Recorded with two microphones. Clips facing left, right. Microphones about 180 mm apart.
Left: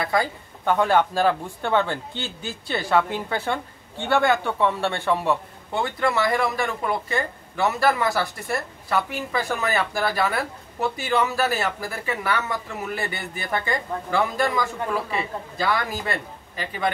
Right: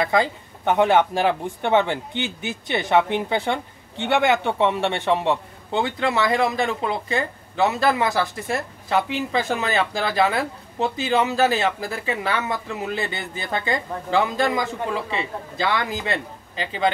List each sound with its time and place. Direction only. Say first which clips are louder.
0.0 s speech: right 3 dB; 20° right (ahead or behind)